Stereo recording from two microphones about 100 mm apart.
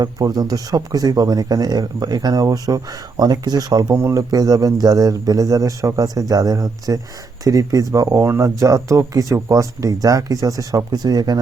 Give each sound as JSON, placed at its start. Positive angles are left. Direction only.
{"t": 0.0, "sound": "speech", "side_deg": -40}
{"t": 3.9, "sound": "speech", "side_deg": -30}